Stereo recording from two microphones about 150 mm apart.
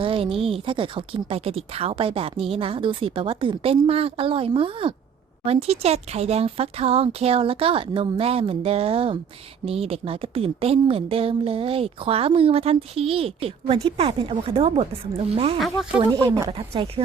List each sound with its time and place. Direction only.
0.0 s speech: 40° right (ahead or behind)
15.5 s speech: centre (ahead or behind)
16.1 s speech: 20° right (ahead or behind)
16.5 s speech: 40° right (ahead or behind)